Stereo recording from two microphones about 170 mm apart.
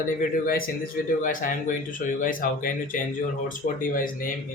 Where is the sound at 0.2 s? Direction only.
55° left (ahead or behind).